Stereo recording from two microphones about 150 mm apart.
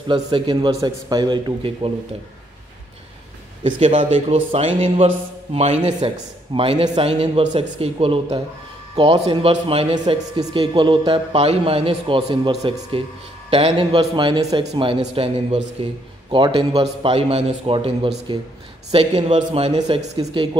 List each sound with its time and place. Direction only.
0.1 s speech: 30° right (ahead or behind)
3.6 s speech: 35° right (ahead or behind)
6.0 s speech: 35° right (ahead or behind)